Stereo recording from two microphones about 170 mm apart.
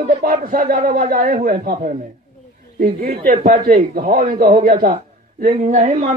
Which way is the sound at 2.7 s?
60° right (ahead or behind).